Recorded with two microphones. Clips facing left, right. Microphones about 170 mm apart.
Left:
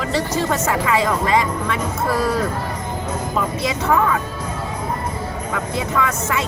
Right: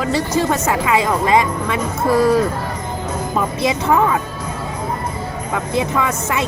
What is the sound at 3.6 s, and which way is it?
Speech, 20° right (ahead or behind).